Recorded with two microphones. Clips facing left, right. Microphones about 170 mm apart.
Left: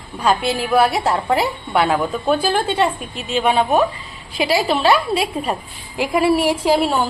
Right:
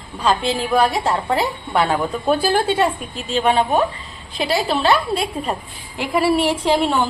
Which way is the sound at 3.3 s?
10° left (ahead or behind).